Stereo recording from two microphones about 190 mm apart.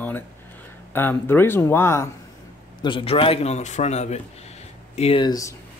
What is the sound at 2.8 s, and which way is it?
A man's voice, 25° left (ahead or behind).